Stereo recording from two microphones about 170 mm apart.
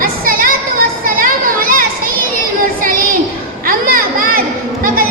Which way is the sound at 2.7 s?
55° right (ahead or behind).